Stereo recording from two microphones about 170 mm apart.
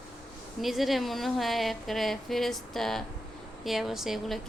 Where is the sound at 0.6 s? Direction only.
Centre (ahead or behind).